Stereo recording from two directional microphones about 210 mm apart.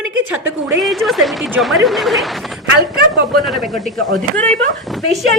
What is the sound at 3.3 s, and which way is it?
Speech, centre (ahead or behind).